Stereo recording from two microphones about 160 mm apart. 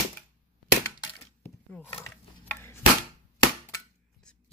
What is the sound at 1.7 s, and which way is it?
Speech, 5° left (ahead or behind).